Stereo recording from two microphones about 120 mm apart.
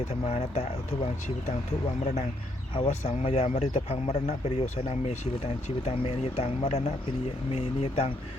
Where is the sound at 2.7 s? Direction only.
55° left (ahead or behind).